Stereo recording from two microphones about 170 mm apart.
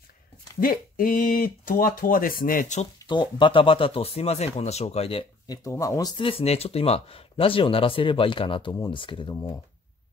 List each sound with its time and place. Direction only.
0.6 s speech: 55° left (ahead or behind)
3.1 s speech: 25° left (ahead or behind)
5.5 s speech: 20° left (ahead or behind)